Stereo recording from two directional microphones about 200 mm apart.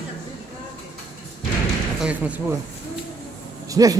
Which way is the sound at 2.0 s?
5° right (ahead or behind).